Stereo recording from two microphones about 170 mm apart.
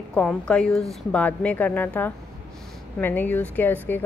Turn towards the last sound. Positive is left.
turn(degrees=10)  # may be behind; listen again after turning